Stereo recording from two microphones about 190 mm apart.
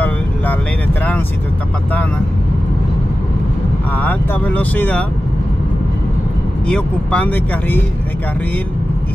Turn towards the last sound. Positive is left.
turn(degrees=10)  # may be behind; listen again after turning